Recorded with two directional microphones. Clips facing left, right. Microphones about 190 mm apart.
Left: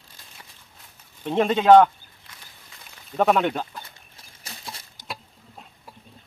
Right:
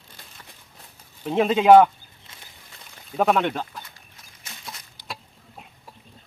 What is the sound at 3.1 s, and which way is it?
Speech, centre (ahead or behind).